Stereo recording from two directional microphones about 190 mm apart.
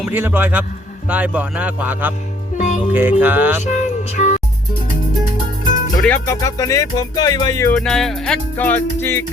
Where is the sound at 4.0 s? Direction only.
35° left (ahead or behind).